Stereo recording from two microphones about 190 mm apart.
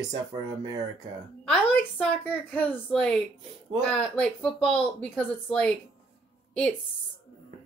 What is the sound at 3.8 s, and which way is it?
Speech, 5° left (ahead or behind).